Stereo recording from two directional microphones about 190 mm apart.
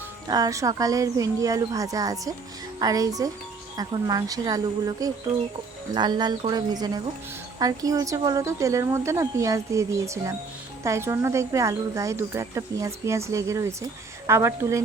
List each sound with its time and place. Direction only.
0.3 s speech: 20° right (ahead or behind)